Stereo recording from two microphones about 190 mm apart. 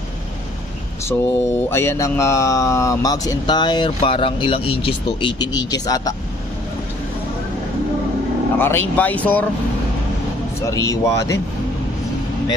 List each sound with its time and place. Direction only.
1.0 s mantra: 15° left (ahead or behind)
8.5 s speech: 10° left (ahead or behind)
10.7 s speech: 15° left (ahead or behind)